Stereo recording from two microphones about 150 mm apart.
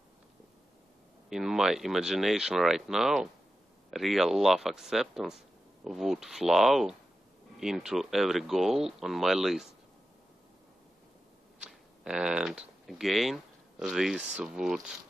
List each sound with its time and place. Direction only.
1.3 s speech: 5° right (ahead or behind)
11.6 s speech: 5° right (ahead or behind)